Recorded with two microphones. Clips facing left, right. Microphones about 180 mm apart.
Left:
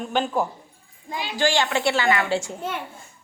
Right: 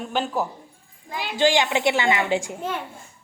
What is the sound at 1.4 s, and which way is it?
A man's voice, 20° right (ahead or behind).